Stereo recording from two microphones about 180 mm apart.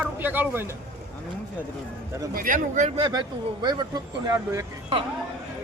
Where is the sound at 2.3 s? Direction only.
50° right (ahead or behind); by 4.6 s 20° right (ahead or behind).